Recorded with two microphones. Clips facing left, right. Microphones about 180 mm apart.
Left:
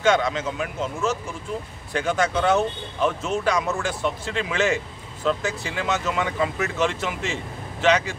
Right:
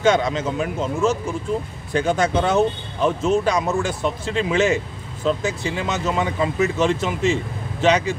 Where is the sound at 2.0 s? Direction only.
20° right (ahead or behind).